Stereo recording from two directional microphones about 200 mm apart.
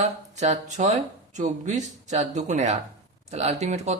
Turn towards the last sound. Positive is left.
turn(degrees=-35)  # may be behind; listen again after turning